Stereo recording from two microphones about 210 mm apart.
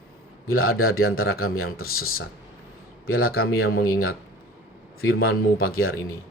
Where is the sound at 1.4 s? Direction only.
45° left (ahead or behind).